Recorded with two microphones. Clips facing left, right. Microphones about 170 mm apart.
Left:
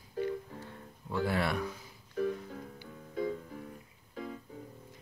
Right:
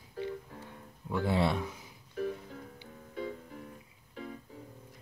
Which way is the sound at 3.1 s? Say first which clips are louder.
Left 4 dB; 40° left (ahead or behind).